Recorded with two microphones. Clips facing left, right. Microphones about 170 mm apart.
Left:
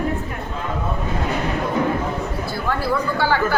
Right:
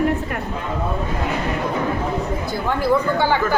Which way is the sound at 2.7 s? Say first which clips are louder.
Right 4 dB; 20° right (ahead or behind).